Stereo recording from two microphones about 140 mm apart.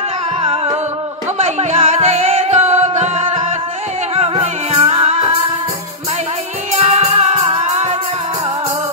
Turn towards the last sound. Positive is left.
turn(degrees=-55)  # may be behind; listen again after turning